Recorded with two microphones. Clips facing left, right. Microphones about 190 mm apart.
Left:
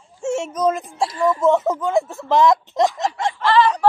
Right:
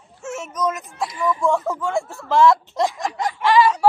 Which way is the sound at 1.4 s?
20° left (ahead or behind).